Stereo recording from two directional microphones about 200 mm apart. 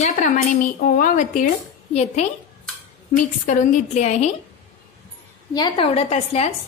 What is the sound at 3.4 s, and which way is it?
Speech, 40° left (ahead or behind).